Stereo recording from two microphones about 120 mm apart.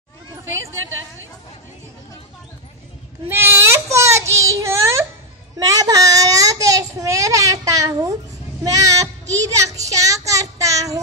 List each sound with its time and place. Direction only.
3.3 s baby cry: 20° right (ahead or behind)
5.6 s child singing: 30° right (ahead or behind)
8.6 s a sound: 30° right (ahead or behind)
9.3 s child singing: 25° right (ahead or behind)